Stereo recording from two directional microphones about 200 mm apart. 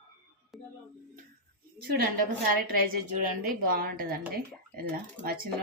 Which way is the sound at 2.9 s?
45° right (ahead or behind).